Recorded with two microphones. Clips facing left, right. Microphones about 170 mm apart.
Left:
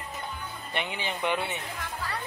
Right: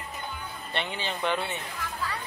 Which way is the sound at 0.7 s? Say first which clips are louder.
Even; 10° left (ahead or behind).